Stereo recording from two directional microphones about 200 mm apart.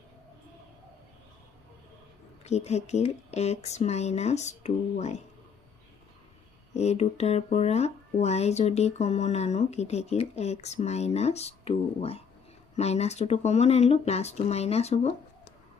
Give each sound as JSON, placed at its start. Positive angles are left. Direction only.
{"t": 2.4, "sound": "speech", "side_deg": 35}
{"t": 6.7, "sound": "speech", "side_deg": 35}